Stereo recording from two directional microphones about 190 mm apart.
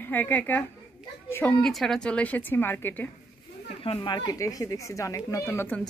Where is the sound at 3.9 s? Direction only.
25° left (ahead or behind).